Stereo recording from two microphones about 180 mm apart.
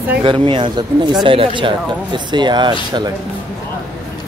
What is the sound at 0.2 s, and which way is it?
Speech, 25° right (ahead or behind).